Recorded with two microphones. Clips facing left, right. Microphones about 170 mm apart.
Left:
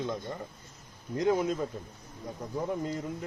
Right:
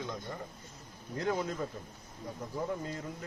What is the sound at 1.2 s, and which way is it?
Speech, 20° left (ahead or behind).